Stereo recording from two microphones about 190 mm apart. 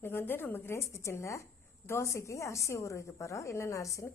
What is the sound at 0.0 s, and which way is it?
A woman's voice, 10° left (ahead or behind).